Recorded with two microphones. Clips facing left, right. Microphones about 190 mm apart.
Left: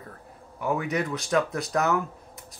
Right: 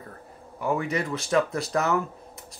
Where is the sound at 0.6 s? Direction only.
Centre (ahead or behind).